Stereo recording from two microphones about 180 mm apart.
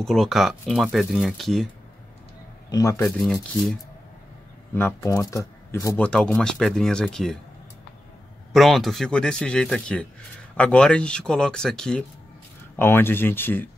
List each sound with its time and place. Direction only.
0.0 s speech: centre (ahead or behind)
2.7 s speech: 20° left (ahead or behind)
3.0 s speech: centre (ahead or behind)
4.7 s speech: 15° left (ahead or behind)
8.5 s speech: centre (ahead or behind)